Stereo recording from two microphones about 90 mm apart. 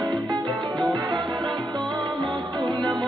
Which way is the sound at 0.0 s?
55° right (ahead or behind).